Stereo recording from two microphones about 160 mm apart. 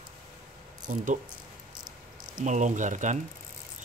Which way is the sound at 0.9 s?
55° right (ahead or behind).